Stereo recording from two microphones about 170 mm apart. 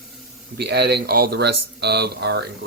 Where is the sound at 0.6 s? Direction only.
75° right (ahead or behind).